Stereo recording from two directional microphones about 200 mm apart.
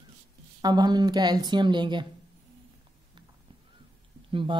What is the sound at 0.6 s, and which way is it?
Speech, 20° right (ahead or behind).